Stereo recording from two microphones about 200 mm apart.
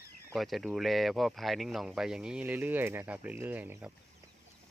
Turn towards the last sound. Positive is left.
turn(degrees=-10)  # may be behind; listen again after turning